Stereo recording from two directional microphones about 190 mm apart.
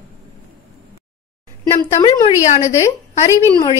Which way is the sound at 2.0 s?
30° left (ahead or behind).